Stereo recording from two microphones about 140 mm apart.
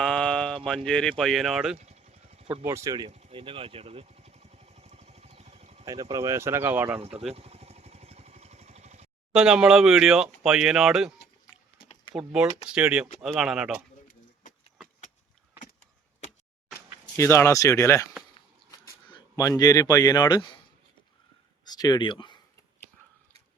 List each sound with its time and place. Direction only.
0.0 s a sound: 5° left (ahead or behind)
0.9 s speech: 5° left (ahead or behind)
1.8 s vehicle: 50° right (ahead or behind)
2.6 s speech: 20° right (ahead or behind)
3.1 s speech: 55° right (ahead or behind)
3.3 s vehicle: 40° right (ahead or behind)
5.8 s speech: 25° right (ahead or behind)
7.0 s vehicle: 45° right (ahead or behind)
9.3 s speech: 5° right (ahead or behind)
12.1 s speech: 5° right (ahead or behind)
17.2 s speech: 20° left (ahead or behind)
19.0 s speech: 30° left (ahead or behind)
21.6 s speech: 30° left (ahead or behind)